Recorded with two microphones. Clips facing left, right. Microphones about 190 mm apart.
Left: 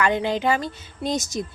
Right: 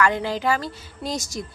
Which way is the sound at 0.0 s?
20° left (ahead or behind).